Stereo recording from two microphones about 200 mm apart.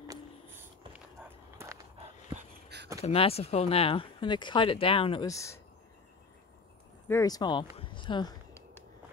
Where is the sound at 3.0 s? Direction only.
30° left (ahead or behind).